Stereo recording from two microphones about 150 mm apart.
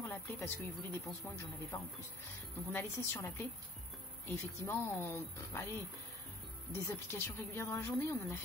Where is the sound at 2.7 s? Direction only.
15° left (ahead or behind).